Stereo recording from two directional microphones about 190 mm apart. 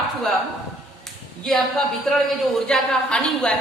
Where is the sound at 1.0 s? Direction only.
Centre (ahead or behind).